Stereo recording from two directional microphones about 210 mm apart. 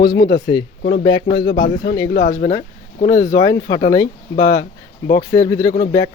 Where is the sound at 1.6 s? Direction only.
60° left (ahead or behind).